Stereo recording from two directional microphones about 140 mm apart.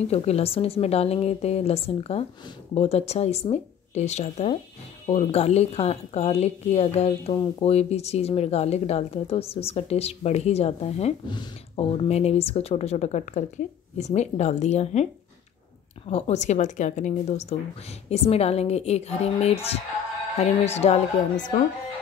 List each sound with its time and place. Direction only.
0.1 s speech: 45° left (ahead or behind)
11.2 s speech: 35° left (ahead or behind); by 15.0 s 55° left (ahead or behind)
16.1 s a woman's voice: 50° left (ahead or behind); by 21.6 s 65° left (ahead or behind)